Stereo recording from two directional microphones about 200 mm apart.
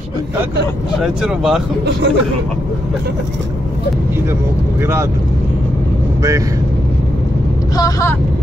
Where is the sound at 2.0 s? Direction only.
60° right (ahead or behind).